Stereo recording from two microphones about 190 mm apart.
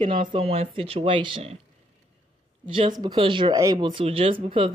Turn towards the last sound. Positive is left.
turn(degrees=-25)  # may be behind; listen again after turning